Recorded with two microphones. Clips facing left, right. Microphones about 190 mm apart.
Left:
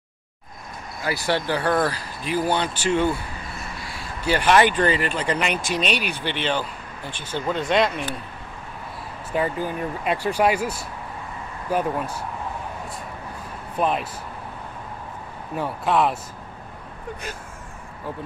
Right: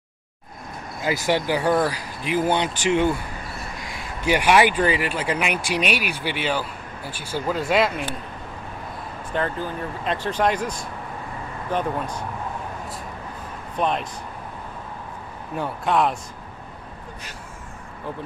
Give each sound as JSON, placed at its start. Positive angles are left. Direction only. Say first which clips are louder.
{"t": 1.0, "sound": "speech", "louder": "right 2 dB", "side_deg": -15}
{"t": 9.3, "sound": "speech", "louder": "left 2 dB", "side_deg": 10}
{"t": 13.7, "sound": "a man's voice", "louder": "left 1 dB", "side_deg": 5}
{"t": 15.5, "sound": "a man's voice", "louder": "even", "side_deg": 0}